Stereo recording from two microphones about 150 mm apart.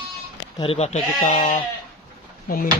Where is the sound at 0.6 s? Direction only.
45° left (ahead or behind); by 1.6 s 65° left (ahead or behind).